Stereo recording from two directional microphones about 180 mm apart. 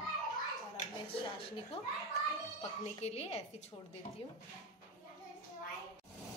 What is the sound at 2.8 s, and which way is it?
Speech, 35° left (ahead or behind).